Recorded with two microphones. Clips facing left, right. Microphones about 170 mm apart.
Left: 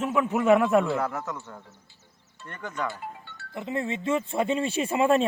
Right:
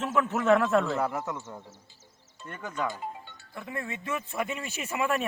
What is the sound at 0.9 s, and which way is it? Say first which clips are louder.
Speech: even; 15° right (ahead or behind).